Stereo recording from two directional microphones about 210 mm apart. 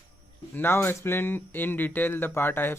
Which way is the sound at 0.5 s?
10° left (ahead or behind).